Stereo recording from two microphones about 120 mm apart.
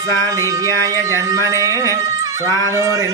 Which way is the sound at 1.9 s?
30° right (ahead or behind).